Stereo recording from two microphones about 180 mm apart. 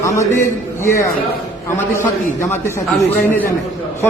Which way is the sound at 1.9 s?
15° left (ahead or behind).